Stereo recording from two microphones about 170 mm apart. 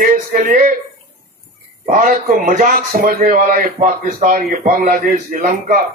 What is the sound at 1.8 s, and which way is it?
A man's voice, 50° right (ahead or behind).